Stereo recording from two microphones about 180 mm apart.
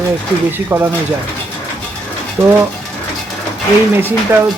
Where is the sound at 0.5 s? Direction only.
15° right (ahead or behind).